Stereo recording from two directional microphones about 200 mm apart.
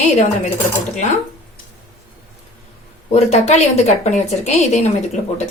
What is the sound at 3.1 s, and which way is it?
A woman's voice, 35° left (ahead or behind).